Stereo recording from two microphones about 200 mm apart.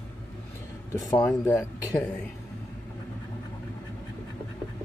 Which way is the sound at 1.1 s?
15° left (ahead or behind).